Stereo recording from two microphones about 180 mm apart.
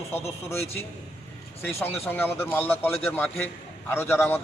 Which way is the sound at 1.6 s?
10° left (ahead or behind).